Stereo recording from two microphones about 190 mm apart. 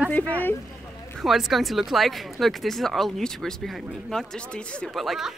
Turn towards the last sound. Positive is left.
turn(degrees=0)  # may be behind; listen again after turning